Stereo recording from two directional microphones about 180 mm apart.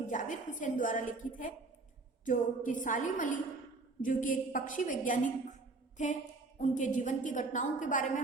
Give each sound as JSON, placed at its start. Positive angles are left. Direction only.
{"t": 0.1, "sound": "a woman's voice", "side_deg": 45}